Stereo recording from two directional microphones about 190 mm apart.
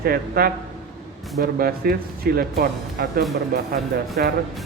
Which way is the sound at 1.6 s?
55° right (ahead or behind).